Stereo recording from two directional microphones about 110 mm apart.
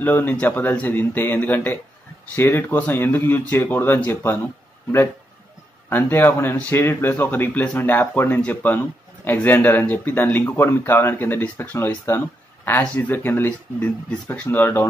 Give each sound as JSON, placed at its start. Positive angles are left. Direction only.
{"t": 0.0, "sound": "speech", "side_deg": 15}
{"t": 5.9, "sound": "speech", "side_deg": 20}